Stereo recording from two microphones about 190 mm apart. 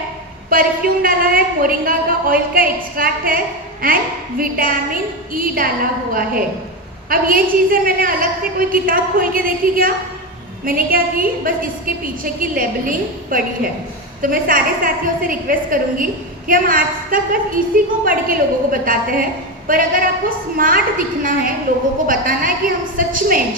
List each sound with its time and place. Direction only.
0.5 s a woman's voice: 50° right (ahead or behind)